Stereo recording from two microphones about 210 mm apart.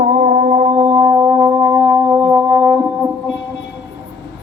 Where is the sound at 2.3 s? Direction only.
10° right (ahead or behind).